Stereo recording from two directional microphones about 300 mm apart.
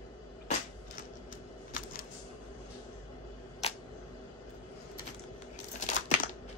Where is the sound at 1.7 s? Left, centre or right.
Left.